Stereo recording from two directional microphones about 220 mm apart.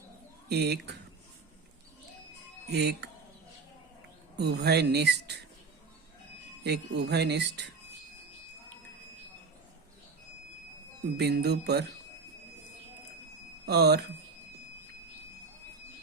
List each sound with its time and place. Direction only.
0.4 s speech: 50° right (ahead or behind)
2.7 s speech: 50° right (ahead or behind)
4.4 s speech: 50° right (ahead or behind)
6.7 s speech: 50° right (ahead or behind)
11.2 s speech: 50° right (ahead or behind)
13.7 s speech: 50° right (ahead or behind)